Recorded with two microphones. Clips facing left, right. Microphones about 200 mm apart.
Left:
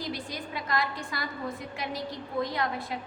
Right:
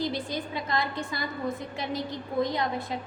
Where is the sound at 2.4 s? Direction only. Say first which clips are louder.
Right 3 dB; 20° right (ahead or behind).